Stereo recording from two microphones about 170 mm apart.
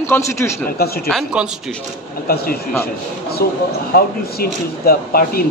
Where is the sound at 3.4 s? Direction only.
65° left (ahead or behind).